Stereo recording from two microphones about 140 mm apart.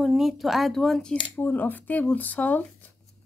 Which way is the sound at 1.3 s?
15° left (ahead or behind).